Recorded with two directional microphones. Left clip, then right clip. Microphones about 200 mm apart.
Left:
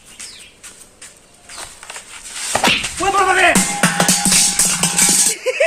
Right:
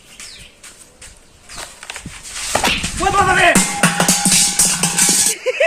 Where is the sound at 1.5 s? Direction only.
40° right (ahead or behind).